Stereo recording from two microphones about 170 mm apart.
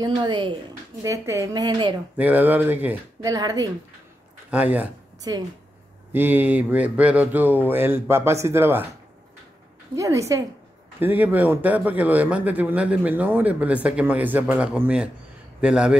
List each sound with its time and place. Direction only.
0.0 s speech: 30° right (ahead or behind)
1.0 s speech: 15° right (ahead or behind)
2.1 s a man's voice: 10° right (ahead or behind)
3.3 s speech: 20° right (ahead or behind)
4.5 s a man's voice: 10° right (ahead or behind)
5.3 s speech: 25° right (ahead or behind)
6.1 s a man's voice: 10° right (ahead or behind)
9.9 s a man's voice: 20° right (ahead or behind)